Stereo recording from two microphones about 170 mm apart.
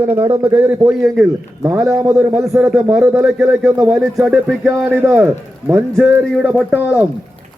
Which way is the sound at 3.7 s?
20° right (ahead or behind).